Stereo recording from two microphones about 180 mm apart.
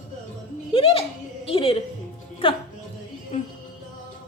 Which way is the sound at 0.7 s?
30° left (ahead or behind).